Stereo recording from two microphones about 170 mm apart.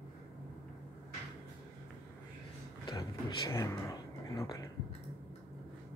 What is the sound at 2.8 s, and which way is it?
Speech, 25° left (ahead or behind).